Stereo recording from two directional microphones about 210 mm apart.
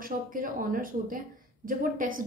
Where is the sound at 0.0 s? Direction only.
40° right (ahead or behind).